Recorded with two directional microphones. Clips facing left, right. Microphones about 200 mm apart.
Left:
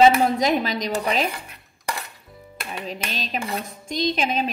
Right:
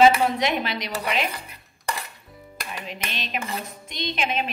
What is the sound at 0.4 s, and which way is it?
Speech, 40° left (ahead or behind).